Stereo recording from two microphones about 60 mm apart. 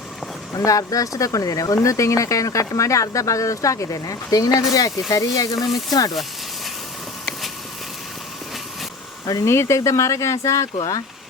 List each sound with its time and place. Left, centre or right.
0.5 s speech: left
9.2 s speech: left
9.5 s speech: left